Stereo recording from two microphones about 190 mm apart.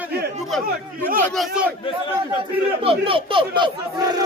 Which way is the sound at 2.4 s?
30° right (ahead or behind).